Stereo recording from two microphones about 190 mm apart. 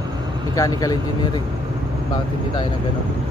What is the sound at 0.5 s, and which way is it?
Speech, 20° left (ahead or behind).